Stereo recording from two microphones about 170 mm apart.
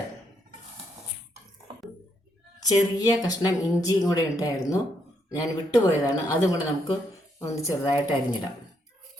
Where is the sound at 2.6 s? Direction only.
20° left (ahead or behind).